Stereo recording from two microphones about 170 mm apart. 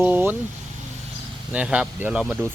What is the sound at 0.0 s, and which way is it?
Vehicle, 10° right (ahead or behind).